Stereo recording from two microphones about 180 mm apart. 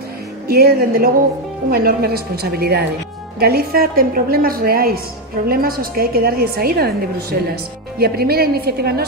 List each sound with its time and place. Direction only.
0.5 s a woman's voice: 60° right (ahead or behind)